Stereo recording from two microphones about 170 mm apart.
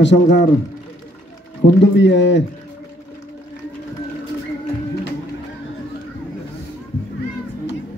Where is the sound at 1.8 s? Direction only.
90° left.